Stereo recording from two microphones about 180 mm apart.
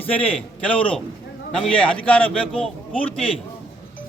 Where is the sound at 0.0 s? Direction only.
5° left (ahead or behind).